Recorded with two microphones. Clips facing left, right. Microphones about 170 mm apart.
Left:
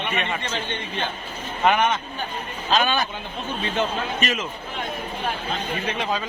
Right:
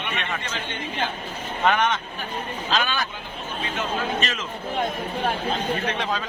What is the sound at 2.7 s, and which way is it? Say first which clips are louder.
Speech: left 4 dB; 20° left (ahead or behind).